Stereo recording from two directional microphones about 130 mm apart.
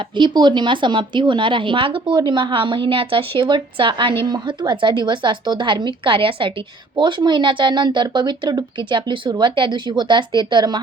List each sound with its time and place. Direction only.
0.2 s speech: 35° right (ahead or behind)